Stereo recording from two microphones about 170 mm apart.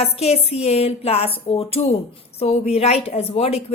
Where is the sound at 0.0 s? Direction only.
35° left (ahead or behind).